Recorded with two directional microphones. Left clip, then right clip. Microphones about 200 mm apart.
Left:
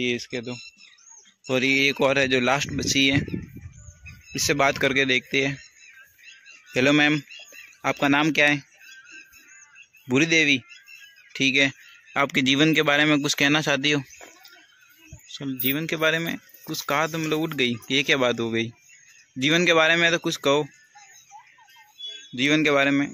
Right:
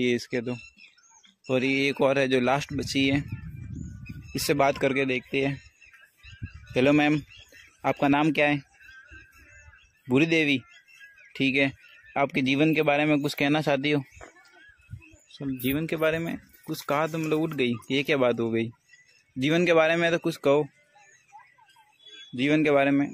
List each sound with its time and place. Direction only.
0.0 s speech: 20° right (ahead or behind)
1.5 s a man's voice: centre (ahead or behind)
4.4 s a man's voice: 5° right (ahead or behind)
6.7 s a man's voice: 5° right (ahead or behind)
10.0 s a man's voice: 5° right (ahead or behind)
22.3 s a man's voice: 5° right (ahead or behind)